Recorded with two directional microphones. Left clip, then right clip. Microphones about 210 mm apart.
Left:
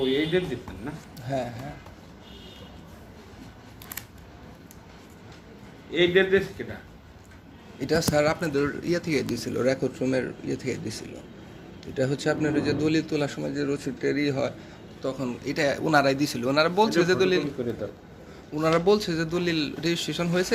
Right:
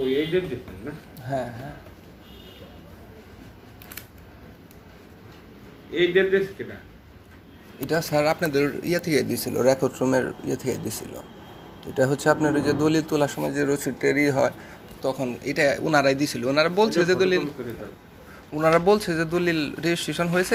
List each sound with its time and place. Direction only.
1.3 s speech: centre (ahead or behind)
5.9 s a man's voice: 15° left (ahead or behind)
7.8 s speech: 10° right (ahead or behind)
18.5 s speech: centre (ahead or behind)